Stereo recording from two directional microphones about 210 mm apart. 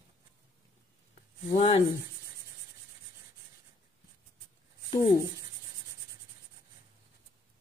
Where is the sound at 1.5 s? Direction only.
30° left (ahead or behind).